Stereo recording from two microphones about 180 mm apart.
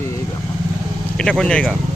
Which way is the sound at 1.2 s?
5° left (ahead or behind).